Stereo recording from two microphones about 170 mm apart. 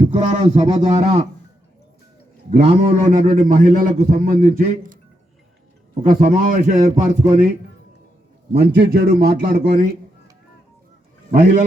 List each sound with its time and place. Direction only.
0.0 s music: 40° right (ahead or behind)
0.6 s a man's voice: 30° right (ahead or behind)
2.6 s a man's voice: 35° right (ahead or behind)
3.1 s a man's voice: 50° right (ahead or behind)
6.1 s a man's voice: 50° right (ahead or behind)
8.5 s a man's voice: 75° right (ahead or behind)
11.3 s a man's voice: 45° right (ahead or behind)